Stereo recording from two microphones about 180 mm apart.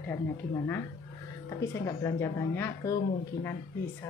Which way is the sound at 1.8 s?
15° left (ahead or behind).